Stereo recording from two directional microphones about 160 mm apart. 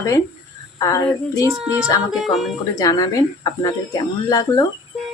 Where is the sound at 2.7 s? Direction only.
25° left (ahead or behind).